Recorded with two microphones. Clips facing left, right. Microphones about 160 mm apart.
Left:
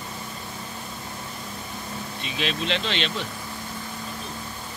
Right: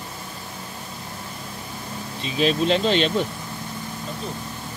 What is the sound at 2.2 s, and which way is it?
Speech, 40° right (ahead or behind).